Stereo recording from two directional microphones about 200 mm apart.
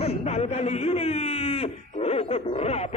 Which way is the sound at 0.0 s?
30° left (ahead or behind).